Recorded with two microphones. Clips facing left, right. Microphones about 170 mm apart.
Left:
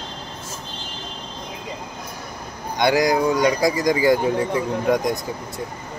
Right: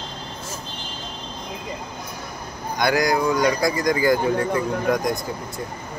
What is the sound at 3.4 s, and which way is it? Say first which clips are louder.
Speech: left 2 dB; 10° left (ahead or behind).